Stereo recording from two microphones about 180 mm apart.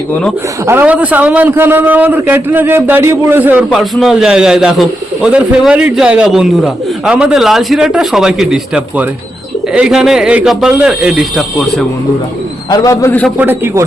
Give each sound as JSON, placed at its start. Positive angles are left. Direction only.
{"t": 0.7, "sound": "a man's voice", "side_deg": -10}
{"t": 12.7, "sound": "a man's voice", "side_deg": 15}
{"t": 13.3, "sound": "a man's voice", "side_deg": -10}